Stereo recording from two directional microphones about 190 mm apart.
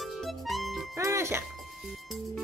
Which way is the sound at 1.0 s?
15° right (ahead or behind).